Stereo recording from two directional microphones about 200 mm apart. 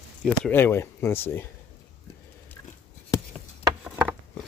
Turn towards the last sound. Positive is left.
turn(degrees=-10)  # may be behind; listen again after turning